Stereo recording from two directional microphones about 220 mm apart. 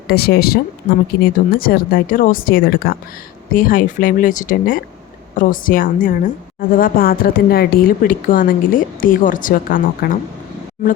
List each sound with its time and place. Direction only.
0.1 s a woman's voice: 45° left (ahead or behind)